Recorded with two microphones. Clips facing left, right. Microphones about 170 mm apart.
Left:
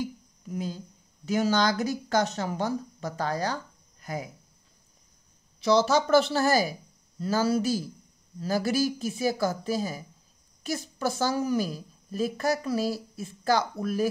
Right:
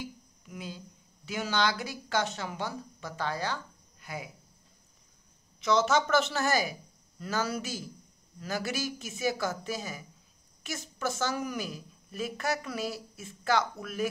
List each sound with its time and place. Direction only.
0.0 s speech: 40° left (ahead or behind)
5.6 s a woman's voice: 35° left (ahead or behind)